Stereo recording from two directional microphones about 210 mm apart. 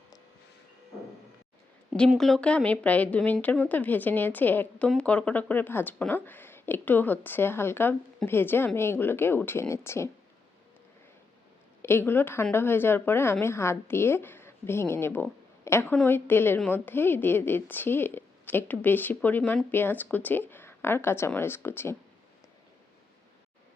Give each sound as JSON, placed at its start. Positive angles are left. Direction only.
{"t": 2.0, "sound": "speech", "side_deg": 0}
{"t": 11.8, "sound": "speech", "side_deg": 10}